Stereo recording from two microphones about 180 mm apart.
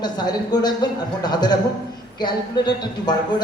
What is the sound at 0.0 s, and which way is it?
Speech, 20° left (ahead or behind).